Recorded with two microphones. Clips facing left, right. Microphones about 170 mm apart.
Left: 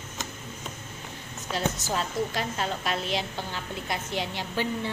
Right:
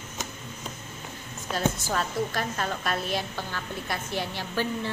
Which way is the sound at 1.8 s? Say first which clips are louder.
Even; 15° left (ahead or behind).